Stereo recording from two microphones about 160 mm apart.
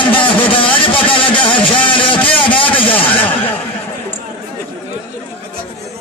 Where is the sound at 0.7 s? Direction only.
35° left (ahead or behind).